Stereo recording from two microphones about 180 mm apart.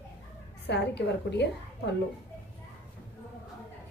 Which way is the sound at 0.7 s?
70° left (ahead or behind).